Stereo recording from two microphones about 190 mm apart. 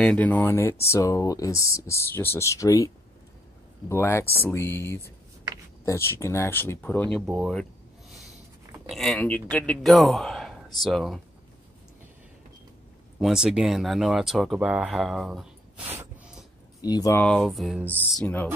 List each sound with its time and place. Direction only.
0.0 s speech: 5° left (ahead or behind)
3.9 s speech: 10° left (ahead or behind)
8.8 s speech: centre (ahead or behind)
13.2 s speech: centre (ahead or behind)
16.8 s speech: 20° left (ahead or behind)
17.2 s speech: 5° left (ahead or behind)